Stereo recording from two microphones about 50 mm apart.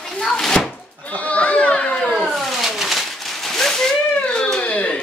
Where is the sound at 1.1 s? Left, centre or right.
Left.